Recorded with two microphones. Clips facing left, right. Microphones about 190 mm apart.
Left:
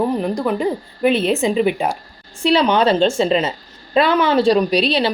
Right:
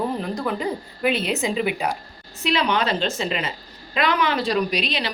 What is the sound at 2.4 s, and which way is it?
A woman's voice, 30° left (ahead or behind).